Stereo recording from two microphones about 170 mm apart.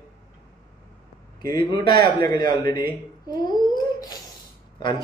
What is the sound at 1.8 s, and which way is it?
Speech, 25° left (ahead or behind).